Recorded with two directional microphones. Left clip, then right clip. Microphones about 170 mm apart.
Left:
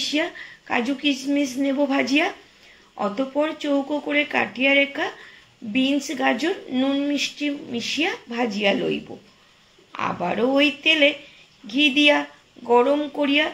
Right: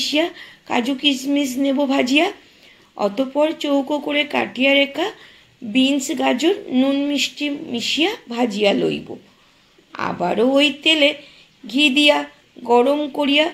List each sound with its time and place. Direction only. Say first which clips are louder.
0.0 s speech: right 4 dB; 30° right (ahead or behind)